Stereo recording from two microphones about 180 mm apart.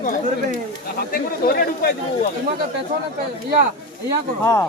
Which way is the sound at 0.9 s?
55° left (ahead or behind).